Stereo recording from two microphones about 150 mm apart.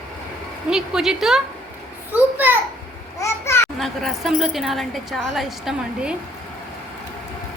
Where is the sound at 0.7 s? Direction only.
5° right (ahead or behind).